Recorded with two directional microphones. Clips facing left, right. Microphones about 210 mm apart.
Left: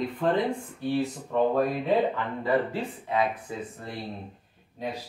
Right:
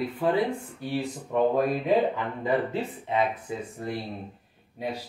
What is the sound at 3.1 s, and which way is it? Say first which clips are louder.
Speech: right 1 dB; 20° right (ahead or behind).